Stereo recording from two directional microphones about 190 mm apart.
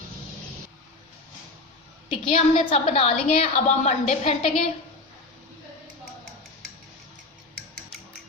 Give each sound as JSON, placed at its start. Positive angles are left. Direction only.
{"t": 2.2, "sound": "a woman's voice", "side_deg": 30}